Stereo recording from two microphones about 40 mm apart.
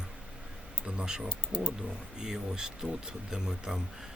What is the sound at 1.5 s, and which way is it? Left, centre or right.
Speech, left.